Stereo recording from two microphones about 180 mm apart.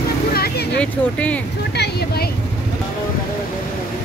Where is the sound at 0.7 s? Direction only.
5° left (ahead or behind).